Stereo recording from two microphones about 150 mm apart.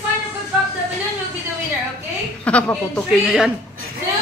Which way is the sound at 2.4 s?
10° left (ahead or behind).